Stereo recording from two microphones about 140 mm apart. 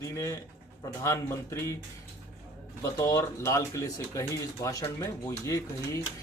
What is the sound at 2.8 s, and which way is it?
Speech, 25° left (ahead or behind).